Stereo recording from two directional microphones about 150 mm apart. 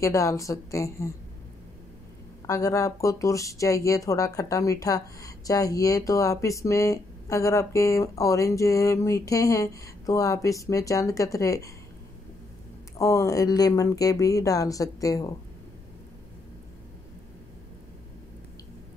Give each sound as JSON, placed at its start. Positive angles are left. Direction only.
{"t": 0.0, "sound": "speech", "side_deg": 20}
{"t": 2.4, "sound": "speech", "side_deg": 20}
{"t": 12.9, "sound": "speech", "side_deg": 20}